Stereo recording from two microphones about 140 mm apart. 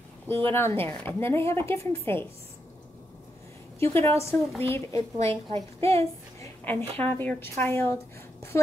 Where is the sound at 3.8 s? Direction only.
20° left (ahead or behind).